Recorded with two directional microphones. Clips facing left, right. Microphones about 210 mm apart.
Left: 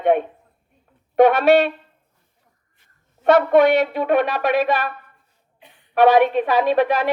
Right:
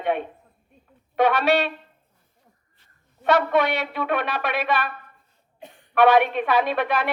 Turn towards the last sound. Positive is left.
turn(degrees=35)  # may be behind; listen again after turning